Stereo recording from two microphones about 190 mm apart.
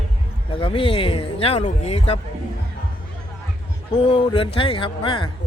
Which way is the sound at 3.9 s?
25° left (ahead or behind).